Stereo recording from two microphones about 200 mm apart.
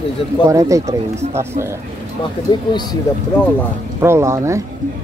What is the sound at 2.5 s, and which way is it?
Speech, 20° left (ahead or behind).